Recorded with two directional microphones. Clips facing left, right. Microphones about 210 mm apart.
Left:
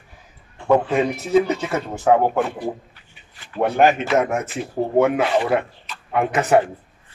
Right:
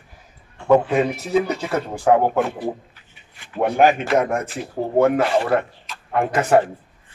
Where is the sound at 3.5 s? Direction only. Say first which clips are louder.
Even; 5° right (ahead or behind).